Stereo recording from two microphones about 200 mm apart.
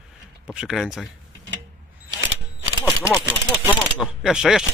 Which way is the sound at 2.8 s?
15° left (ahead or behind).